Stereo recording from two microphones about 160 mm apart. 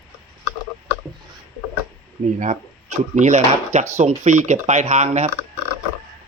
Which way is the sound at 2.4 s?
50° right (ahead or behind).